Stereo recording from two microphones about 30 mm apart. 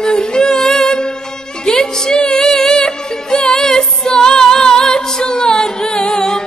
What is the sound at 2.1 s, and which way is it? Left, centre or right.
Music, left.